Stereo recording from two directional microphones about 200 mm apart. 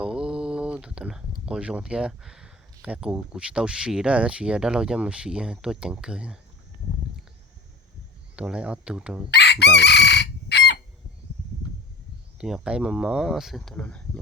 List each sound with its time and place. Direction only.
0.0 s speech: 5° right (ahead or behind)
8.4 s speech: 5° right (ahead or behind)
9.3 s chicken: 55° left (ahead or behind)
12.4 s speech: 5° right (ahead or behind)